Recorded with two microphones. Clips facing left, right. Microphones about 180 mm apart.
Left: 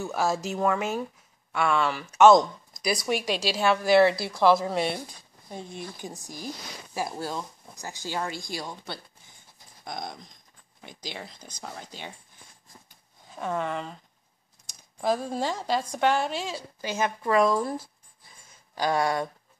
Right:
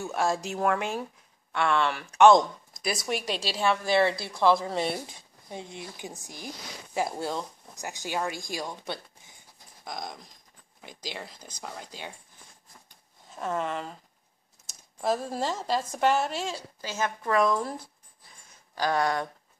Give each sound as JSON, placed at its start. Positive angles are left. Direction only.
{"t": 0.0, "sound": "speech", "side_deg": 0}
{"t": 5.0, "sound": "speech", "side_deg": -15}
{"t": 10.8, "sound": "speech", "side_deg": -5}
{"t": 13.3, "sound": "speech", "side_deg": 0}
{"t": 16.8, "sound": "speech", "side_deg": 15}
{"t": 18.8, "sound": "speech", "side_deg": 10}